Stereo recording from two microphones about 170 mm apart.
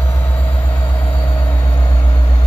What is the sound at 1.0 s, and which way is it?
Vehicle, 30° left (ahead or behind).